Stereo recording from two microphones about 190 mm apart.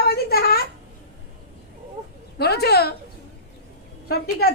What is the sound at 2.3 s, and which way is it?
Speech, 55° left (ahead or behind).